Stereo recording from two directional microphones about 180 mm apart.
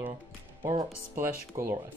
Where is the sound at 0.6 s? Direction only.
20° right (ahead or behind).